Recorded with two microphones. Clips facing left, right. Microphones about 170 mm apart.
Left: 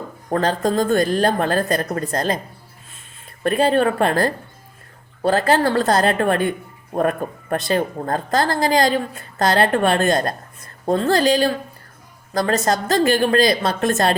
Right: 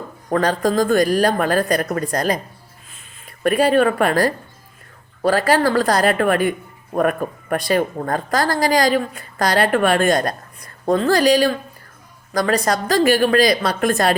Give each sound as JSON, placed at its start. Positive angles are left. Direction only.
{"t": 0.3, "sound": "speech", "side_deg": 25}
{"t": 3.4, "sound": "speech", "side_deg": 25}